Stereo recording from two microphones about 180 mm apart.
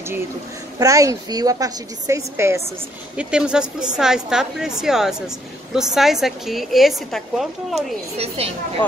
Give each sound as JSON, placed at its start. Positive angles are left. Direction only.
{"t": 0.7, "sound": "a woman's voice", "side_deg": -20}